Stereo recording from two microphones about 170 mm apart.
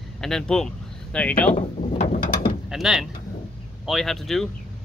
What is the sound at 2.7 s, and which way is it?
Speech, centre (ahead or behind).